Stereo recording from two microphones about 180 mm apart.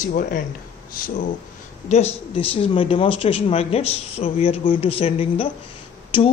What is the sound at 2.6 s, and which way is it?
Speech, 30° left (ahead or behind).